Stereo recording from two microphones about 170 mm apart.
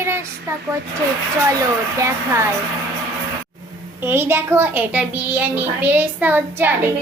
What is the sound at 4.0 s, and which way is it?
A woman's voice, 15° right (ahead or behind).